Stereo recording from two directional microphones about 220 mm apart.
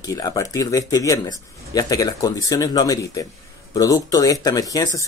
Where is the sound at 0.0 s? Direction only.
15° left (ahead or behind).